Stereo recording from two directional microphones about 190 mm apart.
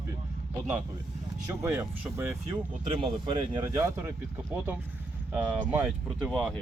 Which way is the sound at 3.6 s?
15° right (ahead or behind).